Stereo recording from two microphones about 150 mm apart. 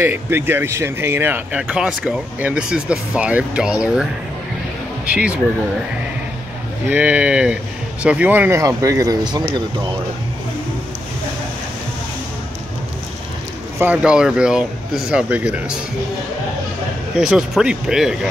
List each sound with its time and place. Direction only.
0.0 s speech: 15° right (ahead or behind)
5.1 s speech: 10° right (ahead or behind)
6.9 s speech: 10° right (ahead or behind); by 9.4 s 25° right (ahead or behind)
13.7 s speech: 10° right (ahead or behind)
17.1 s speech: 5° right (ahead or behind)